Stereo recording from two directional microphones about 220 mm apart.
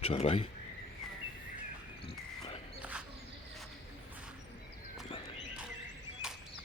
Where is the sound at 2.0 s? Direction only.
25° left (ahead or behind).